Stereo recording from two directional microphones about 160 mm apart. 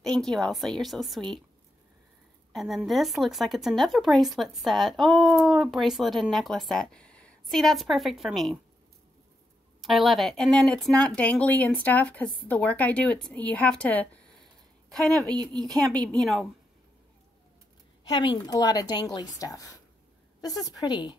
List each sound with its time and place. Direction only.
0.0 s speech: 5° left (ahead or behind)
2.5 s speech: centre (ahead or behind)
9.8 s speech: centre (ahead or behind)
15.7 s speech: 25° right (ahead or behind)
16.2 s speech: centre (ahead or behind)
18.0 s a woman's voice: 30° left (ahead or behind)